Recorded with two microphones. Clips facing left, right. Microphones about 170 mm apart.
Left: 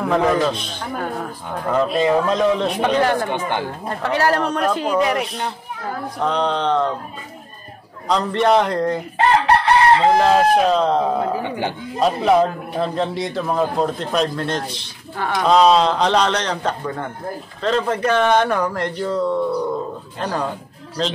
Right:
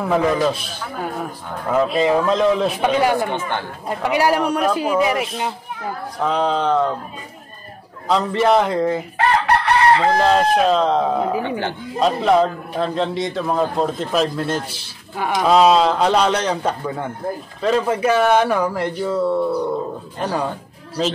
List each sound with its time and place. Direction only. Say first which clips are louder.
0.0 s a man's voice: even; 5° right (ahead or behind)
3.3 s speech: left 1 dB; 15° left (ahead or behind)
3.9 s a man's voice: right 2 dB; 10° right (ahead or behind)
8.1 s a man's voice: even; 5° right (ahead or behind)
9.9 s speech: left 2 dB; 20° left (ahead or behind)
10.2 s a man's voice: left 1 dB; 5° left (ahead or behind)
11.4 s a man's voice: even; 15° left (ahead or behind); by 20.4 s 10° right (ahead or behind)